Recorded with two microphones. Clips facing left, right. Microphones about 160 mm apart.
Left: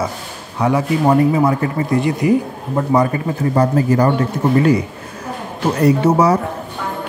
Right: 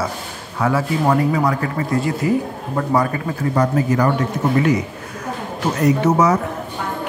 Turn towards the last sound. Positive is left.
turn(degrees=30)  # may be behind; listen again after turning